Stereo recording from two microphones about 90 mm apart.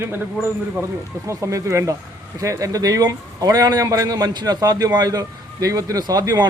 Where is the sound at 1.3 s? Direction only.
35° right (ahead or behind).